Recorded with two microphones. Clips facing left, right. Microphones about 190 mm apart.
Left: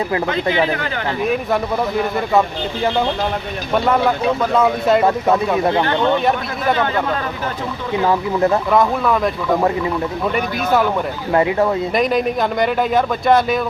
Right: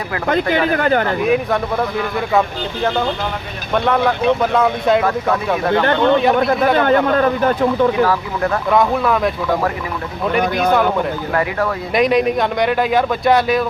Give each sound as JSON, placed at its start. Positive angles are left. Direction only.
{"t": 0.3, "sound": "speech", "side_deg": -50}
{"t": 4.5, "sound": "a man's voice", "side_deg": 0}
{"t": 6.4, "sound": "speech", "side_deg": -50}
{"t": 8.0, "sound": "speech", "side_deg": 25}
{"t": 8.7, "sound": "a man's voice", "side_deg": 0}
{"t": 11.9, "sound": "a man's voice", "side_deg": 0}